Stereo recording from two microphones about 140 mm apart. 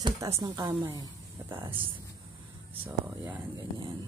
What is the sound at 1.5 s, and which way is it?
Speech, 40° right (ahead or behind).